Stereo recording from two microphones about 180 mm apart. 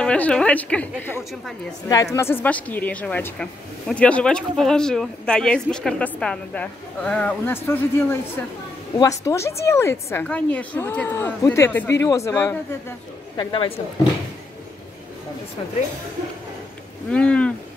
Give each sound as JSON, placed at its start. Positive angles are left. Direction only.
{"t": 0.0, "sound": "a woman's voice", "side_deg": 5}
{"t": 2.1, "sound": "a woman's voice", "side_deg": 15}
{"t": 13.4, "sound": "speech", "side_deg": 30}
{"t": 17.1, "sound": "a woman's voice", "side_deg": 5}